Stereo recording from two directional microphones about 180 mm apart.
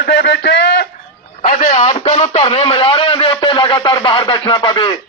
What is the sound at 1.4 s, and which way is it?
Speech, 40° left (ahead or behind).